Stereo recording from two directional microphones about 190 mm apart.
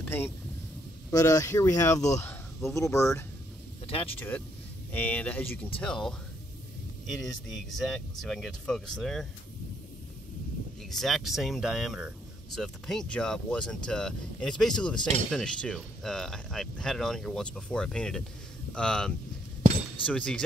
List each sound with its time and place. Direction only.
0.0 s vehicle: 10° left (ahead or behind)
1.1 s speech: 15° left (ahead or behind)
3.8 s speech: 30° left (ahead or behind)
4.9 s speech: 10° left (ahead or behind)
7.7 s speech: centre (ahead or behind)
10.9 s speech: centre (ahead or behind)